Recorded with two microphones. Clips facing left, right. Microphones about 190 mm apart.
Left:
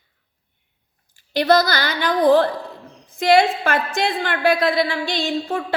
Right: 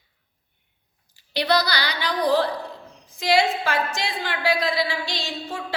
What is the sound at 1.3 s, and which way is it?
A woman's voice, 50° left (ahead or behind).